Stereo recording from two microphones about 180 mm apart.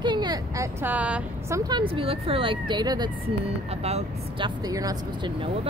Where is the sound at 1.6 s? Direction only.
25° right (ahead or behind).